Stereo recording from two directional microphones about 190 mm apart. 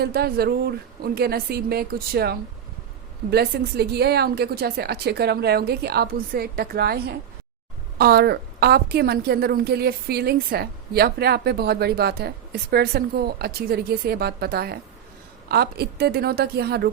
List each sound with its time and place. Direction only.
0.0 s a woman's voice: 55° right (ahead or behind)